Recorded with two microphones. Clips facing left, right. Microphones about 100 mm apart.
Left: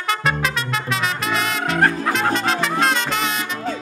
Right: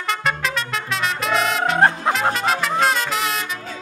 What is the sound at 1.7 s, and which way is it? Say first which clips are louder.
Music: right 1 dB; 25° right (ahead or behind).